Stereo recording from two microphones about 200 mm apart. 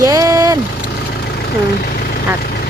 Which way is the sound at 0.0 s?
15° right (ahead or behind).